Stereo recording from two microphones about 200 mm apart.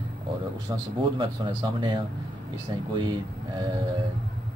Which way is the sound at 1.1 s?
25° right (ahead or behind).